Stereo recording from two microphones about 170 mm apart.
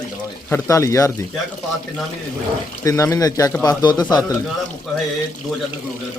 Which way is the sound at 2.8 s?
20° left (ahead or behind).